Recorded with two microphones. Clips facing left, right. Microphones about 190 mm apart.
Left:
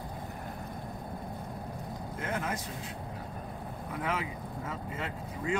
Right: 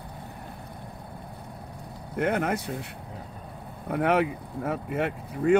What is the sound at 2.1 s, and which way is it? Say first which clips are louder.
Speech: right 10 dB; 65° right (ahead or behind).